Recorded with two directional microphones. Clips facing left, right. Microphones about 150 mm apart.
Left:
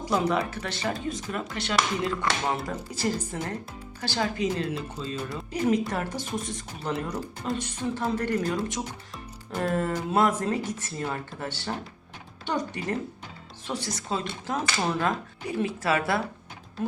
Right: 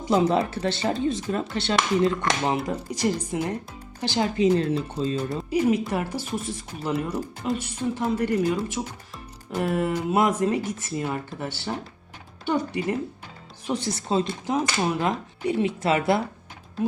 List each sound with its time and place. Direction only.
0.0 s speech: 25° right (ahead or behind)
2.7 s speech: 15° right (ahead or behind)
4.4 s speech: 35° right (ahead or behind)
5.5 s speech: 10° right (ahead or behind)
13.7 s speech: 25° right (ahead or behind)
14.4 s speech: 15° right (ahead or behind)